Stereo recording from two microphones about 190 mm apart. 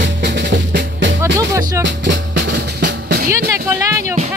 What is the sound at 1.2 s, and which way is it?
Music, 15° right (ahead or behind).